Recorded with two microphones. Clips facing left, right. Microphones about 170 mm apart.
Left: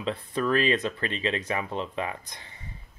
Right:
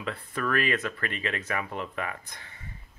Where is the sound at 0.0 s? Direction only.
25° left (ahead or behind).